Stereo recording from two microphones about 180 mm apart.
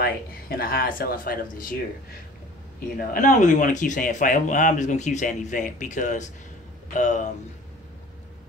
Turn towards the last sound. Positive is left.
turn(degrees=45)  # may be behind; listen again after turning